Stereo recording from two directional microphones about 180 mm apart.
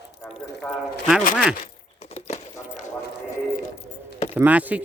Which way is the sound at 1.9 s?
35° left (ahead or behind).